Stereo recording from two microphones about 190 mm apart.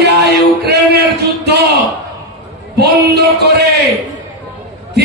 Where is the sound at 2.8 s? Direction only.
60° right (ahead or behind).